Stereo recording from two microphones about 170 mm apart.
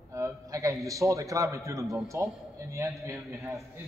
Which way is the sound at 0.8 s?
20° right (ahead or behind).